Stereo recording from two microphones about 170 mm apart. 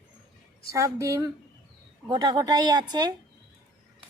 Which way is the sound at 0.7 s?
20° right (ahead or behind).